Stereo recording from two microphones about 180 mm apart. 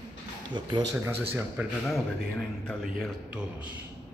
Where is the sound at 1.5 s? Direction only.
Centre (ahead or behind).